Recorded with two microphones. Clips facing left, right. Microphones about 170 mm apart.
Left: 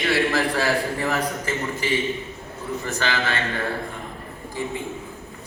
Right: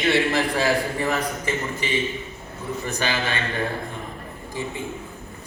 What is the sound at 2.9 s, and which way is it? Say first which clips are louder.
Speech: even; 15° right (ahead or behind).